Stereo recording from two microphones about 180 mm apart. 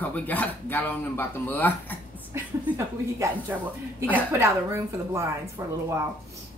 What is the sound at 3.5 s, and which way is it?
A woman's voice, 10° right (ahead or behind).